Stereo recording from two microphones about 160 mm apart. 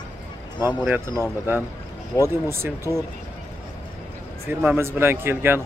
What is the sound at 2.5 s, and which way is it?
Speech, 15° right (ahead or behind).